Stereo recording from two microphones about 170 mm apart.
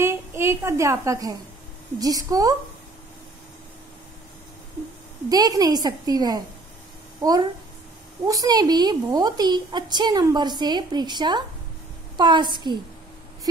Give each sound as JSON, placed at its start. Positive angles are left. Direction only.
{"t": 0.0, "sound": "a woman's voice", "side_deg": -15}
{"t": 5.3, "sound": "a woman's voice", "side_deg": -20}